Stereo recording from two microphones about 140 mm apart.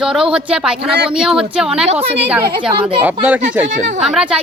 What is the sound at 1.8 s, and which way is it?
Speech, 45° right (ahead or behind).